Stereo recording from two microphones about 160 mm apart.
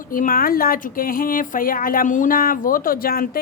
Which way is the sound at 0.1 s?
60° left (ahead or behind).